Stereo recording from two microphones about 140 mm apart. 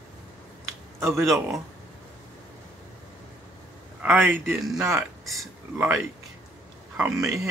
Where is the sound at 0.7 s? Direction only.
20° right (ahead or behind).